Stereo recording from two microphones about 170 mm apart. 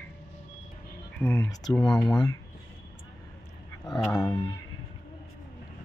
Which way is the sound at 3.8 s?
Centre (ahead or behind).